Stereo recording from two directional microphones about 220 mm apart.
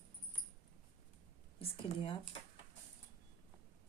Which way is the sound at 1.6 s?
25° left (ahead or behind).